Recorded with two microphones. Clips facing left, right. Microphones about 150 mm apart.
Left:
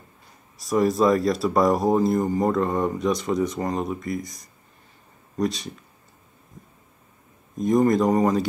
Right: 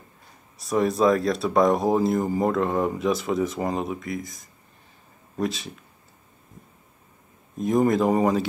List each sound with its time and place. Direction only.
0.6 s speech: centre (ahead or behind)
7.5 s speech: 5° right (ahead or behind)